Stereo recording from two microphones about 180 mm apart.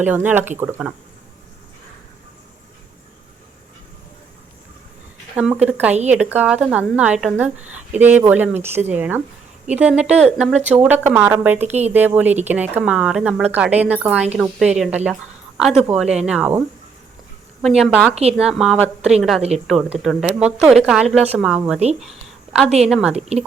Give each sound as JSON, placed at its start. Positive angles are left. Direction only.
{"t": 0.0, "sound": "speech", "side_deg": -10}
{"t": 5.4, "sound": "speech", "side_deg": -5}
{"t": 17.7, "sound": "speech", "side_deg": 0}
{"t": 18.1, "sound": "a woman's voice", "side_deg": -35}
{"t": 18.3, "sound": "speech", "side_deg": -5}
{"t": 22.8, "sound": "speech", "side_deg": -5}